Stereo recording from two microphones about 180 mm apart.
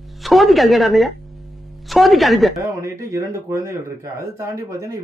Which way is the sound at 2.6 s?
15° right (ahead or behind).